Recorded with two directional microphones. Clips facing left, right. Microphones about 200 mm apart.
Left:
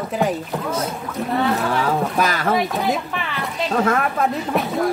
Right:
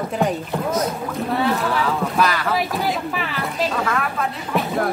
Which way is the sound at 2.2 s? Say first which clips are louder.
Right 1 dB; 45° left (ahead or behind).